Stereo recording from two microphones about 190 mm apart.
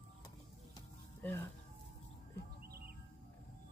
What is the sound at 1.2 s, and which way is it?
Speech, 10° left (ahead or behind).